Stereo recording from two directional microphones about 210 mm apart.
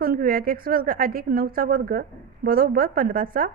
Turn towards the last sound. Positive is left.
turn(degrees=-40)  # may be behind; listen again after turning